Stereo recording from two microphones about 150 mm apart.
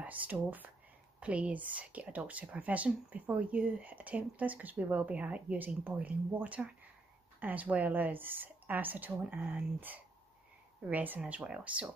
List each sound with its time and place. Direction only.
0.0 s speech: 10° right (ahead or behind)